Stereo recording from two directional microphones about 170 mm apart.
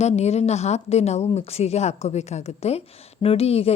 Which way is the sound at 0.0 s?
40° left (ahead or behind).